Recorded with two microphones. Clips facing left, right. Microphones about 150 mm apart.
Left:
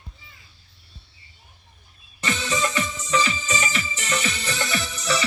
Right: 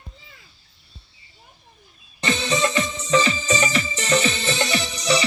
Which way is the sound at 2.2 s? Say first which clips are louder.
Right 4 dB; 25° right (ahead or behind).